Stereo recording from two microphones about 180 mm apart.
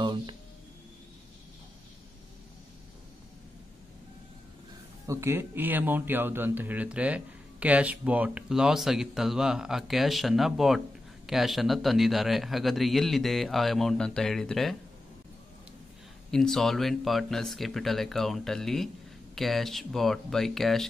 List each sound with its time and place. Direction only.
0.0 s speech: 25° right (ahead or behind)
5.0 s a man's voice: 15° right (ahead or behind); by 14.8 s centre (ahead or behind)
16.3 s a man's voice: 5° left (ahead or behind)